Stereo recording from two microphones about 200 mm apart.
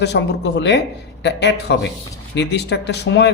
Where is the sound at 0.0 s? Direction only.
60° left (ahead or behind).